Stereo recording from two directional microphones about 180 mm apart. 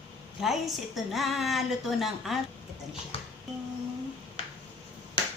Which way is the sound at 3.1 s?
30° left (ahead or behind).